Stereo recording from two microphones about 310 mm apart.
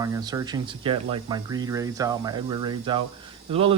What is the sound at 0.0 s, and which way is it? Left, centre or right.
Speech, centre.